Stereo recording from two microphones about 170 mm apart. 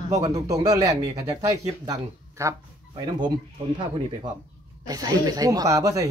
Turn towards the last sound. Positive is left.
turn(degrees=-20)  # may be behind; listen again after turning